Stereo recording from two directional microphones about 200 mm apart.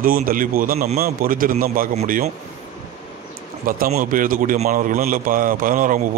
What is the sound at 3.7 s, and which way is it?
A man's voice, 45° right (ahead or behind).